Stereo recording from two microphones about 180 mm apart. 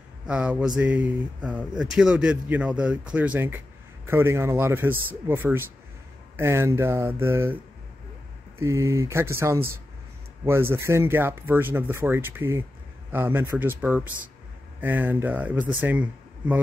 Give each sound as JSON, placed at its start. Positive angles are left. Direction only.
{"t": 0.3, "sound": "a sound", "side_deg": -5}
{"t": 0.7, "sound": "speech", "side_deg": -5}
{"t": 8.5, "sound": "speech", "side_deg": -15}